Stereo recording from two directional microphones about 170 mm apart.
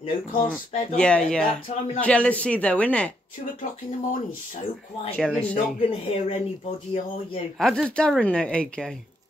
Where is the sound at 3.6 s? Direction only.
50° left (ahead or behind).